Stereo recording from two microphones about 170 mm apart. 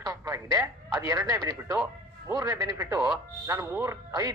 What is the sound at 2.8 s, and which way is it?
Speech, 5° right (ahead or behind).